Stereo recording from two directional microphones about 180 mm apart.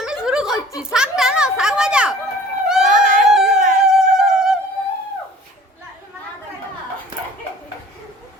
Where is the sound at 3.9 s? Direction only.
5° right (ahead or behind).